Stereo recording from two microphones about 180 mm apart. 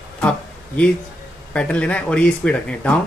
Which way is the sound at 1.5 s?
5° left (ahead or behind).